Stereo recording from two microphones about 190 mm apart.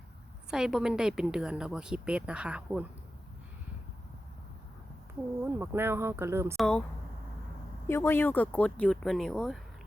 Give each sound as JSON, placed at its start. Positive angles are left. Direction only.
{"t": 0.5, "sound": "speech", "side_deg": -5}
{"t": 5.4, "sound": "speech", "side_deg": -10}
{"t": 6.6, "sound": "speech", "side_deg": 5}
{"t": 7.9, "sound": "speech", "side_deg": 15}